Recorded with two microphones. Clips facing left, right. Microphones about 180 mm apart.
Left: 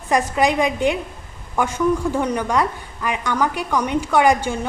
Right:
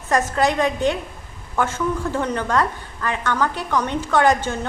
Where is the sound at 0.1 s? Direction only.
15° left (ahead or behind).